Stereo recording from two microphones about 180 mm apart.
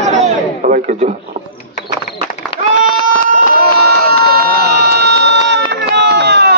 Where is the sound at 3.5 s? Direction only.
60° right (ahead or behind).